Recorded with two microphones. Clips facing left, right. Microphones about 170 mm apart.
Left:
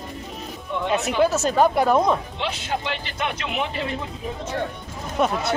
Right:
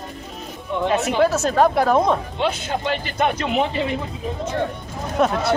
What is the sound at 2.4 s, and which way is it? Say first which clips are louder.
Speech: right 5 dB; 45° right (ahead or behind).